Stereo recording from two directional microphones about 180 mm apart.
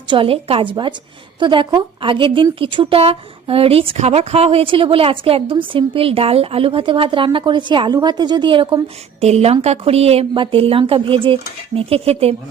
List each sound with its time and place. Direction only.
0.1 s a woman's voice: 30° right (ahead or behind)